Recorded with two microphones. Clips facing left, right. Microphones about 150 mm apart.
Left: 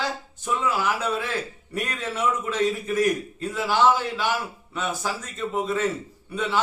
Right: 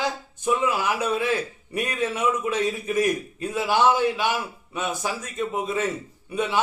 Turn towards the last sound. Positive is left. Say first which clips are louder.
# right 1 dB
turn(degrees=-15)  # may be behind; listen again after turning